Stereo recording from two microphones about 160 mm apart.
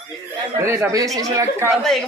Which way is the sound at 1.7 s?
Centre (ahead or behind).